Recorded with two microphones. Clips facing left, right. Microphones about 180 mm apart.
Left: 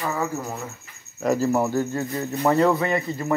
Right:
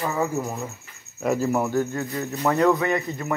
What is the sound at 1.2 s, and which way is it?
Speech, 5° right (ahead or behind).